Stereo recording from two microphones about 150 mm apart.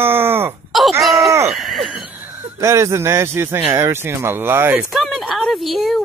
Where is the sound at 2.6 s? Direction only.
20° right (ahead or behind).